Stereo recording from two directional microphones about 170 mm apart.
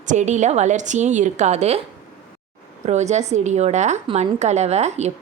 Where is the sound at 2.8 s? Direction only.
40° right (ahead or behind).